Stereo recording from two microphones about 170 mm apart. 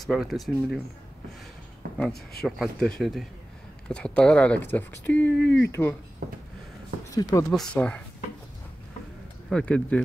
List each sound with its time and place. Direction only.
0.0 s speech: centre (ahead or behind)
2.4 s speech: 5° left (ahead or behind)
5.4 s speech: 90° left
5.7 s speech: 10° left (ahead or behind)
7.2 s speech: 20° left (ahead or behind)
7.5 s speech: 5° left (ahead or behind)
9.5 s speech: 5° left (ahead or behind)